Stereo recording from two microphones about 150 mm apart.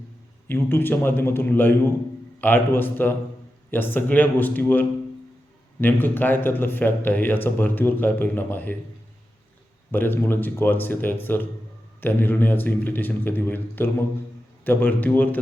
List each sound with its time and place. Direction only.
0.4 s a man's voice: 15° left (ahead or behind)
9.9 s a man's voice: 15° left (ahead or behind)